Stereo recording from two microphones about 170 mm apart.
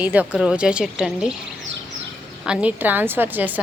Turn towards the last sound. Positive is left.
turn(degrees=-10)  # may be behind; listen again after turning